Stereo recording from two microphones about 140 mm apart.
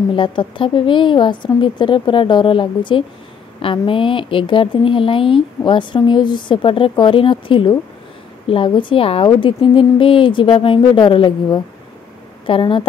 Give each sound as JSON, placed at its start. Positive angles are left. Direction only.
{"t": 0.1, "sound": "speech", "side_deg": 35}